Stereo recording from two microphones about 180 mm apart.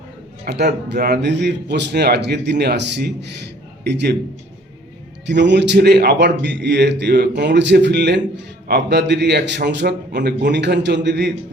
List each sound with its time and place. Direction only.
0.4 s speech: 70° right (ahead or behind)
5.2 s speech: 75° right (ahead or behind)